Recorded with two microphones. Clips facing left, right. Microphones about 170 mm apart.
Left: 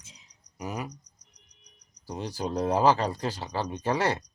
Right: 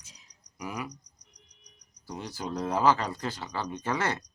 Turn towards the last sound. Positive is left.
turn(degrees=35)  # may be behind; listen again after turning